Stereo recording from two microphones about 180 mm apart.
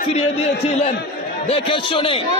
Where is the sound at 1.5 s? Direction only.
30° left (ahead or behind).